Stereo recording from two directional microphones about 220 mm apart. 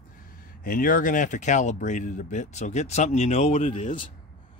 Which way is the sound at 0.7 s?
40° left (ahead or behind).